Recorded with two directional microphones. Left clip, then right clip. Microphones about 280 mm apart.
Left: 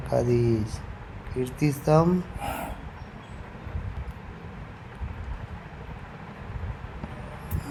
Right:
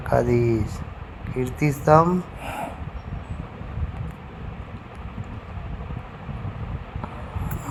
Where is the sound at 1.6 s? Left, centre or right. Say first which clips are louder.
Right 6 dB; centre.